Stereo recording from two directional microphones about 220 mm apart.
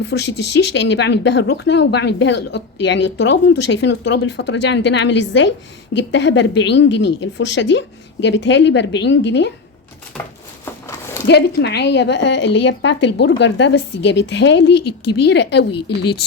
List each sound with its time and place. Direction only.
0.0 s a woman's voice: 50° left (ahead or behind)
10.1 s a sound: 5° left (ahead or behind)
11.3 s speech: 50° left (ahead or behind)